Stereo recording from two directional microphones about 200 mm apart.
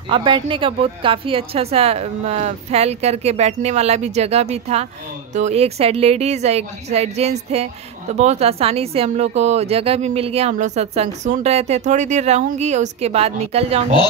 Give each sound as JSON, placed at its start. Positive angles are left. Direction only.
{"t": 0.1, "sound": "speech", "side_deg": -25}